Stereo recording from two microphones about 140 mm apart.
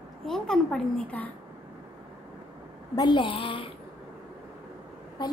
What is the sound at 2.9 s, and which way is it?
Speech, 35° left (ahead or behind).